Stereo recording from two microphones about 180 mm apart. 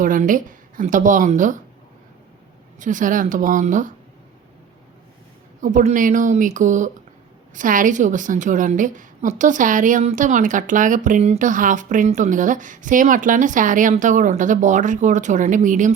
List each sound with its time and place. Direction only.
0.0 s a woman's voice: 50° right (ahead or behind)
2.7 s a woman's voice: 45° right (ahead or behind)
5.5 s a woman's voice: 45° right (ahead or behind)